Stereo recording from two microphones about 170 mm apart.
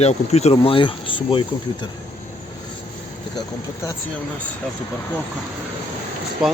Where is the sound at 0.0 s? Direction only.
40° left (ahead or behind).